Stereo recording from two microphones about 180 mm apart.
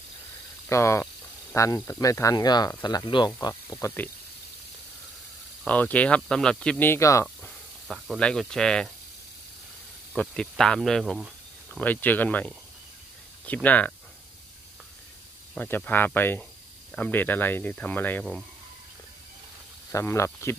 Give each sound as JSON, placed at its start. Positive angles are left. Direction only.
{"t": 0.7, "sound": "speech", "side_deg": 15}
{"t": 5.6, "sound": "speech", "side_deg": 10}
{"t": 7.4, "sound": "speech", "side_deg": 5}
{"t": 10.1, "sound": "speech", "side_deg": 5}
{"t": 15.5, "sound": "speech", "side_deg": 10}
{"t": 19.9, "sound": "speech", "side_deg": 15}